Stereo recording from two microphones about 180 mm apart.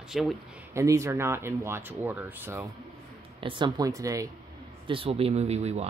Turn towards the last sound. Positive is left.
turn(degrees=-35)  # may be behind; listen again after turning